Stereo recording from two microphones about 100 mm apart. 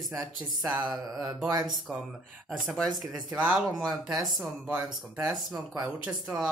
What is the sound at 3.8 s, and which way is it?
Speech, 40° right (ahead or behind).